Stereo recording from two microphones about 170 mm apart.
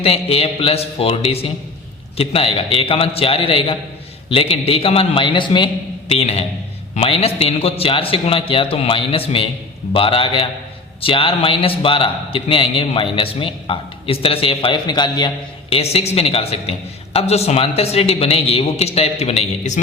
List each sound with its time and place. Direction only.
0.0 s a man's voice: 35° left (ahead or behind)
15.7 s a man's voice: 35° left (ahead or behind)